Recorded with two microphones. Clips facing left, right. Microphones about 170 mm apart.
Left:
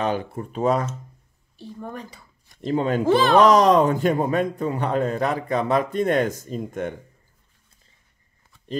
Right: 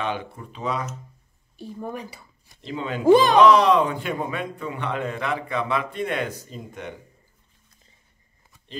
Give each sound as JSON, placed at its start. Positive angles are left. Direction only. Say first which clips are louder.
{"t": 0.0, "sound": "speech", "louder": "left 4 dB", "side_deg": 40}
{"t": 1.6, "sound": "speech", "louder": "right 2 dB", "side_deg": -10}
{"t": 2.6, "sound": "speech", "louder": "left 8 dB", "side_deg": 45}
{"t": 3.1, "sound": "speech", "louder": "right 5 dB", "side_deg": -15}
{"t": 3.3, "sound": "speech", "louder": "left 1 dB", "side_deg": 45}